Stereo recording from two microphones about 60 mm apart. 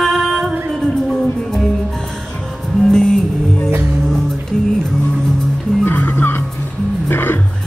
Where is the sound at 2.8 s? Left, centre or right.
Centre.